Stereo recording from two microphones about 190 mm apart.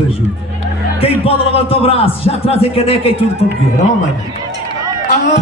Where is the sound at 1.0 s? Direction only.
30° left (ahead or behind).